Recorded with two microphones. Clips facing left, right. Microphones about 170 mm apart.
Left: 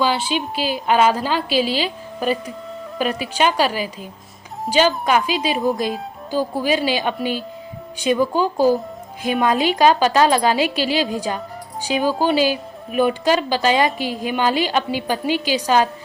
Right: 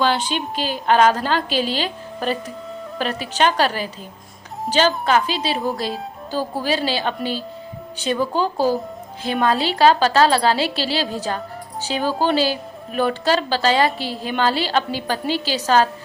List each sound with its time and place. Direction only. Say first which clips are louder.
0.0 s a woman's voice: even; 5° left (ahead or behind)
5.0 s a woman's voice: left 1 dB; 10° left (ahead or behind)